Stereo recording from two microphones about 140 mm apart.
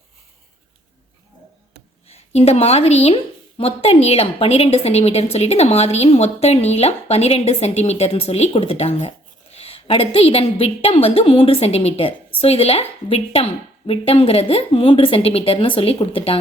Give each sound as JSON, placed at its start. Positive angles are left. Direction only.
{"t": 2.0, "sound": "a woman's voice", "side_deg": 45}